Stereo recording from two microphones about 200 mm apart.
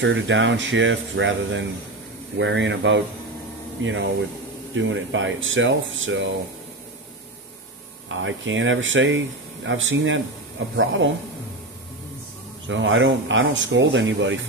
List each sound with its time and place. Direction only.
0.0 s speech: 65° right (ahead or behind)
8.1 s speech: 70° right (ahead or behind)
12.6 s speech: 70° right (ahead or behind)